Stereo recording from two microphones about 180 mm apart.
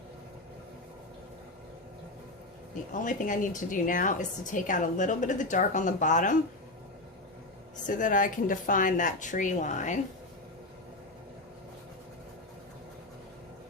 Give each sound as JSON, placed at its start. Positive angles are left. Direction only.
{"t": 2.9, "sound": "a woman's voice", "side_deg": 45}
{"t": 7.9, "sound": "a woman's voice", "side_deg": 45}